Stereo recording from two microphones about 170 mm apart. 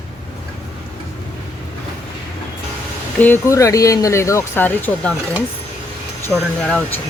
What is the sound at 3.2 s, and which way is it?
Speech, 15° left (ahead or behind).